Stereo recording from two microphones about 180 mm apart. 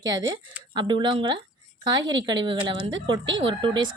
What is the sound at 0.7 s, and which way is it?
Speech, 25° right (ahead or behind).